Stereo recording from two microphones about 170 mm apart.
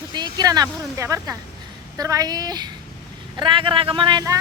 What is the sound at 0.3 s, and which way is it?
Speech, 25° right (ahead or behind).